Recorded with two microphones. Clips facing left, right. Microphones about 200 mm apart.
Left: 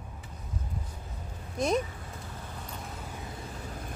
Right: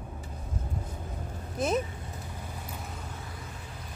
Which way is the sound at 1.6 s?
5° right (ahead or behind).